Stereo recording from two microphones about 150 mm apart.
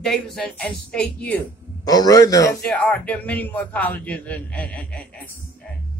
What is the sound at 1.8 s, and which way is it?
Speech, 25° left (ahead or behind).